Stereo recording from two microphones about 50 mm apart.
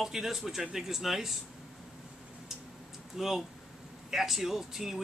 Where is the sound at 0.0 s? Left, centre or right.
Centre.